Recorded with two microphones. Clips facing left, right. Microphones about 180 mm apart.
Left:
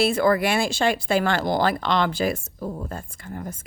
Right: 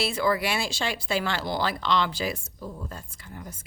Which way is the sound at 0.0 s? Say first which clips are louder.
Left 6 dB; 50° left (ahead or behind).